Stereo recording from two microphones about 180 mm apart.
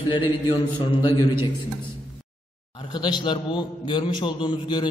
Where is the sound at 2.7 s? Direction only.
25° left (ahead or behind).